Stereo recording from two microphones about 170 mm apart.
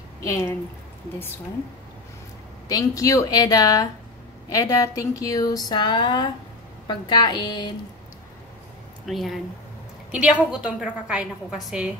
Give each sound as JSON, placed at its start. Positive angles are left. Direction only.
{"t": 0.2, "sound": "a woman's voice", "side_deg": 15}
{"t": 2.7, "sound": "speech", "side_deg": 20}
{"t": 9.0, "sound": "a woman's voice", "side_deg": 0}